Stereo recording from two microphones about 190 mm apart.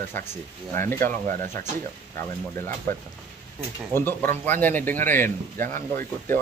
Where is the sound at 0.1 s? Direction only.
10° left (ahead or behind).